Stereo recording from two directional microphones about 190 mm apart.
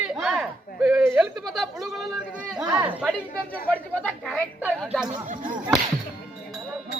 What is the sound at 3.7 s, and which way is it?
Speech, 5° left (ahead or behind).